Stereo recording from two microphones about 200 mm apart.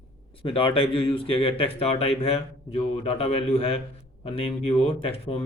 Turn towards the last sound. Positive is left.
turn(degrees=30)  # may be behind; listen again after turning